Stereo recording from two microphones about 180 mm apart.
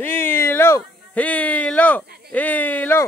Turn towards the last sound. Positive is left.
turn(degrees=10)  # may be behind; listen again after turning